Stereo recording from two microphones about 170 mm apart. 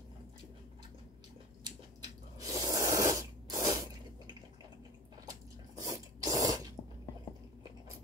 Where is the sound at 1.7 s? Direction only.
25° right (ahead or behind).